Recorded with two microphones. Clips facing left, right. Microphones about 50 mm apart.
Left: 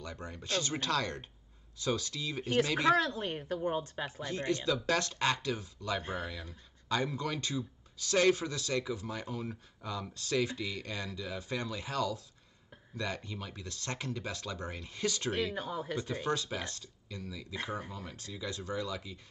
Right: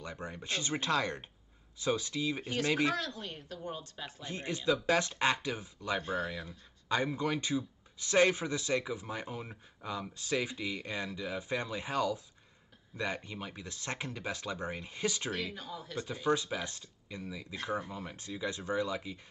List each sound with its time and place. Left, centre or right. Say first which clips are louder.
0.0 s speech: right 1 dB; right
3.0 s a woman's voice: left 7 dB; left
4.3 s speech: right 1 dB; centre
15.5 s speech: left 6 dB; left
16.3 s speech: right 6 dB; centre